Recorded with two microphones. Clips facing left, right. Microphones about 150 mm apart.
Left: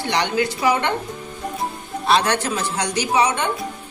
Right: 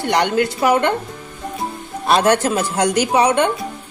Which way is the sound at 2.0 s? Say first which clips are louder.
Right 4 dB; 45° right (ahead or behind).